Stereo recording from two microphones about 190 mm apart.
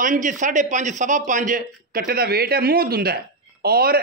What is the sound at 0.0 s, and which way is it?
Speech, 45° right (ahead or behind).